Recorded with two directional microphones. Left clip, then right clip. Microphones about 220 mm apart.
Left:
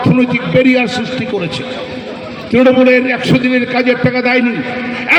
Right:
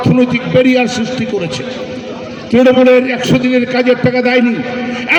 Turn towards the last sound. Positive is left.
turn(degrees=-45)  # may be behind; listen again after turning